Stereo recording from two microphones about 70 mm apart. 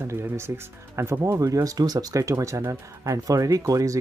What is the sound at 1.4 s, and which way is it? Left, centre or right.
Speech, right.